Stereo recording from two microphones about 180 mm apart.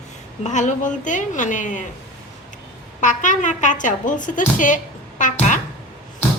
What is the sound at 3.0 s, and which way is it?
Speech, 45° left (ahead or behind).